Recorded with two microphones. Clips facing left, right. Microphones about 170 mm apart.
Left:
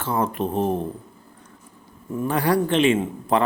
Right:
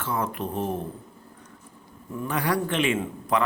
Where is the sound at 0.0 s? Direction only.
30° left (ahead or behind).